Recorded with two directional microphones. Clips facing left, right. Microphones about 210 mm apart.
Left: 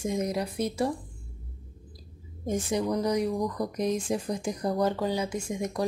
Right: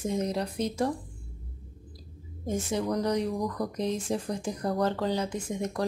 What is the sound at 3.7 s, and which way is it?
Speech, 15° left (ahead or behind).